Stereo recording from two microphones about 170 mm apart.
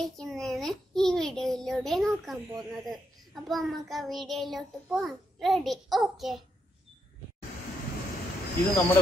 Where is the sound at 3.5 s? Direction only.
Centre (ahead or behind).